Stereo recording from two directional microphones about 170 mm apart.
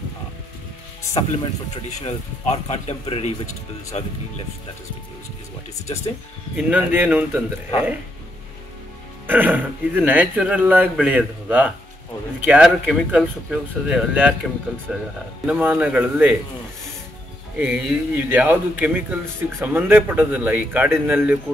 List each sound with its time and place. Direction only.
1.1 s speech: 40° left (ahead or behind)
6.5 s a man's voice: 10° right (ahead or behind)
9.3 s a man's voice: 10° right (ahead or behind)
17.6 s a man's voice: 10° right (ahead or behind)